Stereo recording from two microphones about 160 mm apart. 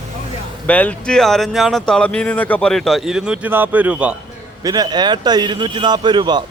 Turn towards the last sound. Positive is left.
turn(degrees=-30)  # may be behind; listen again after turning